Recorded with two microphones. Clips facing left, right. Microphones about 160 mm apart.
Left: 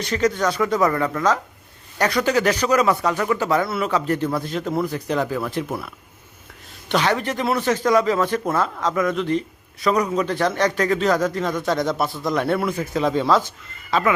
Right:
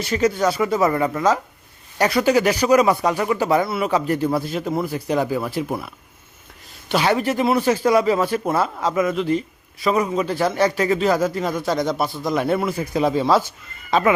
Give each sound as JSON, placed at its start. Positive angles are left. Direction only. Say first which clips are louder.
{"t": 0.0, "sound": "speech", "louder": "right 2 dB", "side_deg": -10}
{"t": 6.8, "sound": "a man's voice", "louder": "right 2 dB", "side_deg": -10}